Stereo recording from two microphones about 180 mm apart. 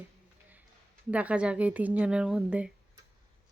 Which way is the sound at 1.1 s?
5° right (ahead or behind).